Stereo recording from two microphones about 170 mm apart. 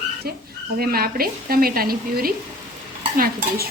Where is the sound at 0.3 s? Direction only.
65° right (ahead or behind).